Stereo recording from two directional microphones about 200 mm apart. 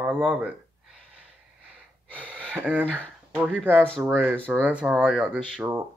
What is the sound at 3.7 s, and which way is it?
Speech, 5° left (ahead or behind).